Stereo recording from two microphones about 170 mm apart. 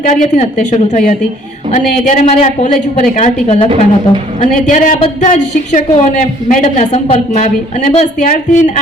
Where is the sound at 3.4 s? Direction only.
40° left (ahead or behind).